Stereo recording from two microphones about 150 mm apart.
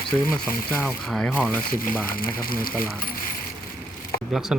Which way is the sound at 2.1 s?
75° left (ahead or behind).